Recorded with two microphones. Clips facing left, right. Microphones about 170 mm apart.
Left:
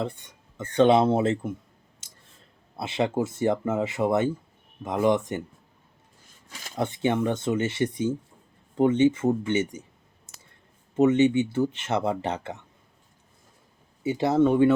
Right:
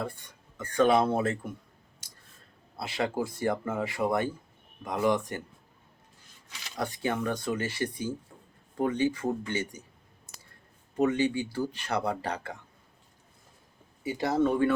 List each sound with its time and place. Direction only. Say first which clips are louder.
0.0 s speech: left 5 dB; 20° left (ahead or behind)
2.0 s scissors: even; 25° left (ahead or behind)
2.7 s speech: left 5 dB; 25° left (ahead or behind)
6.5 s a sound: left 4 dB; 45° left (ahead or behind)
6.7 s speech: left 6 dB; 25° left (ahead or behind)
10.9 s speech: left 7 dB; 25° left (ahead or behind)
14.0 s speech: left 5 dB; 25° left (ahead or behind)